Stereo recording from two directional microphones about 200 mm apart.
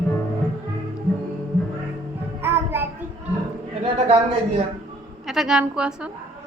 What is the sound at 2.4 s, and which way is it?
Music, 10° right (ahead or behind).